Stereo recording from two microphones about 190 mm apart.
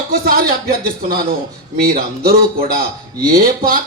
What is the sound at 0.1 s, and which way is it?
A man's voice, 50° right (ahead or behind).